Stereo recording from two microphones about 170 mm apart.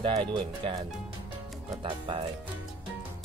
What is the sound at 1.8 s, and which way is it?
Speech, 30° right (ahead or behind).